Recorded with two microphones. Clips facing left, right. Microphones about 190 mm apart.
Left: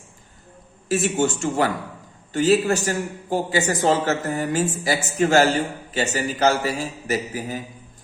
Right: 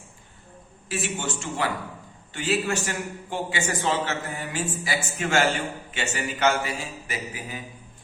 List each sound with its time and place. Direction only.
0.9 s a man's voice: 40° left (ahead or behind)